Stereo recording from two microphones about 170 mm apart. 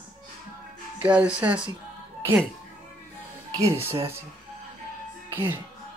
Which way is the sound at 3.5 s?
20° right (ahead or behind).